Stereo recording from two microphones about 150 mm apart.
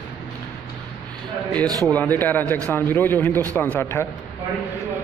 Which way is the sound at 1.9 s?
10° left (ahead or behind).